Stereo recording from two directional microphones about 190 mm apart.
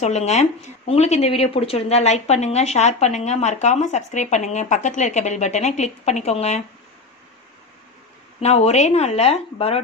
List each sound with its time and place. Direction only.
0.0 s speech: 35° left (ahead or behind)
8.4 s speech: 35° left (ahead or behind)